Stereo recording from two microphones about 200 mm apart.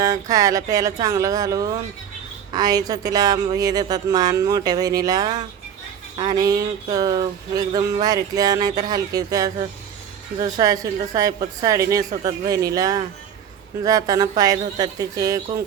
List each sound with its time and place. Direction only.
0.0 s a woman's voice: 15° right (ahead or behind)
2.5 s a sound: 20° right (ahead or behind)
10.4 s a woman's voice: 20° right (ahead or behind)